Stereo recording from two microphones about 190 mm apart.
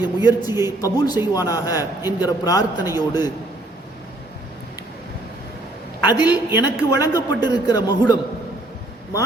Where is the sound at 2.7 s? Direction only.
15° right (ahead or behind).